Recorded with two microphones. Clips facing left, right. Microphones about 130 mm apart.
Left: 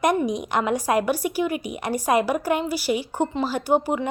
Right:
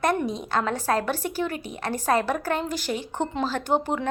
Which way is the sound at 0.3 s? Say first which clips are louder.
Left 3 dB; 15° left (ahead or behind).